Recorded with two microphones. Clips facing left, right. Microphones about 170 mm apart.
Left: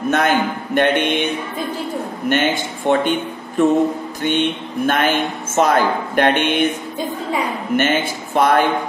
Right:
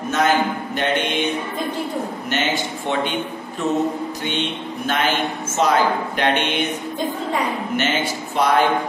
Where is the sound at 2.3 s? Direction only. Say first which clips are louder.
Left 5 dB; 50° left (ahead or behind).